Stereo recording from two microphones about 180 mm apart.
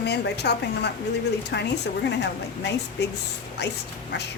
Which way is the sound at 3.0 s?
75° left (ahead or behind).